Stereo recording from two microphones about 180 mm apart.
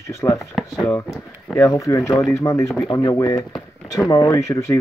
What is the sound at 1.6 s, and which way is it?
Speech, 15° left (ahead or behind).